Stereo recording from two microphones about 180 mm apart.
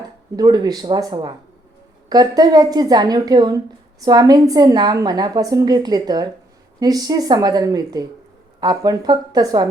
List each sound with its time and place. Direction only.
0.3 s a woman's voice: 20° right (ahead or behind)